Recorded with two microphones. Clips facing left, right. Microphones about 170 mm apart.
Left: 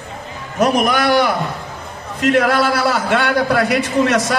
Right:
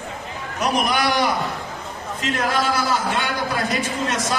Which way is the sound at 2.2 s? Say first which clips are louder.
Left 8 dB; 65° left (ahead or behind).